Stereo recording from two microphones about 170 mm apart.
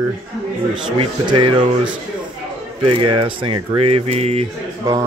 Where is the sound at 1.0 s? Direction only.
30° right (ahead or behind).